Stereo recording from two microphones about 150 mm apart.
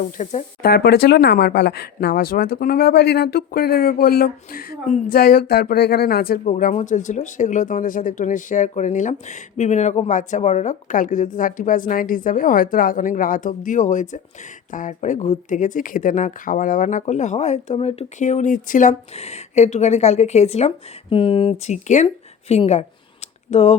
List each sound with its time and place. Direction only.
0.0 s speech: 50° left (ahead or behind)
0.6 s speech: 90° left
6.4 s speech: 55° left (ahead or behind)